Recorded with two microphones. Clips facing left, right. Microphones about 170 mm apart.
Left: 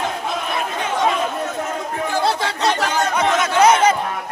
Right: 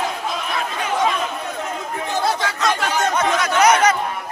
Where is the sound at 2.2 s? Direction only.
30° left (ahead or behind).